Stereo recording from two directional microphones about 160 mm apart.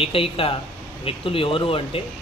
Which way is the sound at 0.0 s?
35° left (ahead or behind).